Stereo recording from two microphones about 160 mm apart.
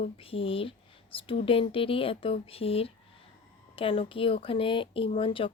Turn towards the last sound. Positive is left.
turn(degrees=35)  # may be behind; listen again after turning